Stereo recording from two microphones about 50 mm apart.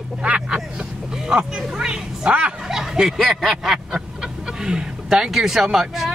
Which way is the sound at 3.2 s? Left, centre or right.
Centre.